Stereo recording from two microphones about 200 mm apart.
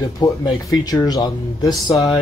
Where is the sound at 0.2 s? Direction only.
15° left (ahead or behind).